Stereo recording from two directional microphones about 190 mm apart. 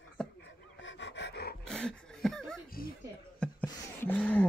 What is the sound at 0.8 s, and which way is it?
Dog, 75° left (ahead or behind).